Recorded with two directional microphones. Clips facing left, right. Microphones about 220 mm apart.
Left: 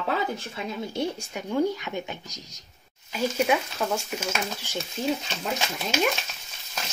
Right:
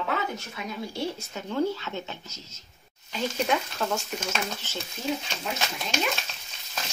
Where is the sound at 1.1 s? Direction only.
15° left (ahead or behind).